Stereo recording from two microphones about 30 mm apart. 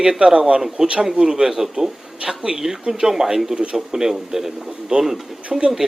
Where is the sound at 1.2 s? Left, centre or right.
Right; by 5.2 s centre.